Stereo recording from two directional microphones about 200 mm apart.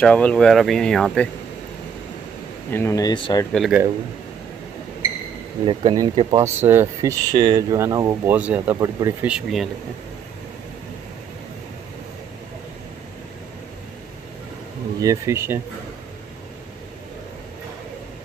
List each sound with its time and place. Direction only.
0.0 s speech: 5° left (ahead or behind)
2.7 s speech: 15° left (ahead or behind)
3.5 s speech: centre (ahead or behind)
5.7 s speech: 25° right (ahead or behind)
8.3 s speech: 10° right (ahead or behind)
9.3 s speech: centre (ahead or behind)
15.0 s speech: 15° right (ahead or behind)